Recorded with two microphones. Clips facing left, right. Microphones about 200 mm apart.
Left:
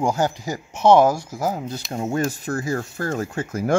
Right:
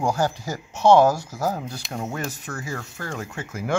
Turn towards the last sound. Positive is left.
turn(degrees=40)  # may be behind; listen again after turning